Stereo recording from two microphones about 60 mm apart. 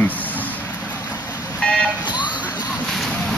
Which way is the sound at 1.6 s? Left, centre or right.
Centre.